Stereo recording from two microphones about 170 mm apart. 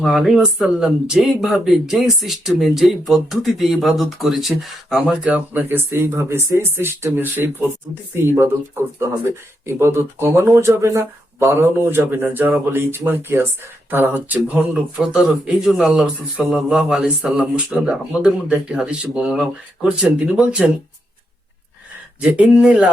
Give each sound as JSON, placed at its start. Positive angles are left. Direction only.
{"t": 0.0, "sound": "speech", "side_deg": 0}
{"t": 22.2, "sound": "speech", "side_deg": -5}